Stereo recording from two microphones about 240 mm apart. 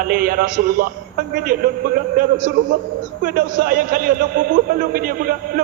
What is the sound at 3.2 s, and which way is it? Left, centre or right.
A man's voice, right.